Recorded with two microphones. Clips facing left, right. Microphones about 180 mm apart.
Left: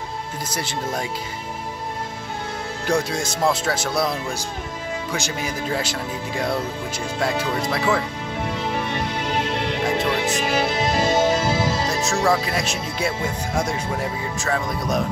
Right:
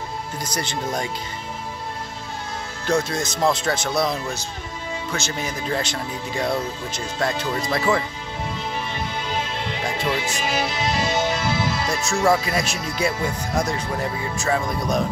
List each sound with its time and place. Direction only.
0.5 s speech: 5° left (ahead or behind)
2.9 s speech: 10° left (ahead or behind)
8.9 s music: 70° left (ahead or behind); by 11.9 s 40° left (ahead or behind)
11.9 s speech: centre (ahead or behind)